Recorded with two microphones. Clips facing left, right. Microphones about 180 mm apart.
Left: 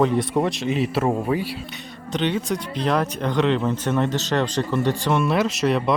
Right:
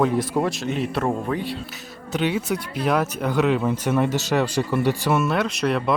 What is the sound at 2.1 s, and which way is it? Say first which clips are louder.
Speech: even; 5° right (ahead or behind).